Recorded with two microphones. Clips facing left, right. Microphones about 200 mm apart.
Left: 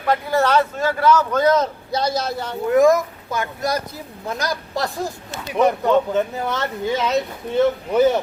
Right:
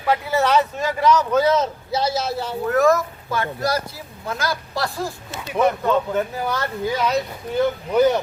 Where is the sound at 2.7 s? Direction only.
15° left (ahead or behind).